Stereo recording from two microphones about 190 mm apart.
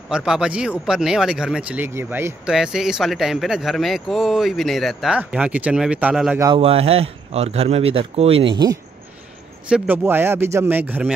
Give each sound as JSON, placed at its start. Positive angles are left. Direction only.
{"t": 0.1, "sound": "speech", "side_deg": -5}
{"t": 6.5, "sound": "speech", "side_deg": -30}
{"t": 9.7, "sound": "speech", "side_deg": -5}